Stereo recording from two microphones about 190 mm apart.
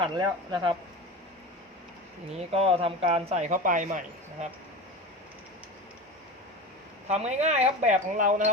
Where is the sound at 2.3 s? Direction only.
30° right (ahead or behind).